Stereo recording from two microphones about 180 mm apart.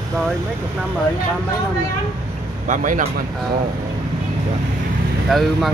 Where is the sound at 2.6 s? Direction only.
45° right (ahead or behind).